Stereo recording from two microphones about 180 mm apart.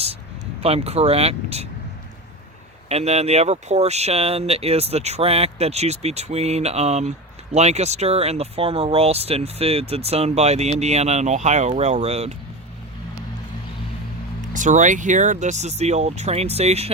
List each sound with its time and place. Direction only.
0.6 s speech: 35° right (ahead or behind)
2.9 s speech: 35° right (ahead or behind)
14.5 s speech: 45° right (ahead or behind)